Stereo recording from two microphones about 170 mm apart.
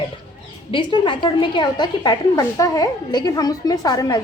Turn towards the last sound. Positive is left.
turn(degrees=20)  # may be behind; listen again after turning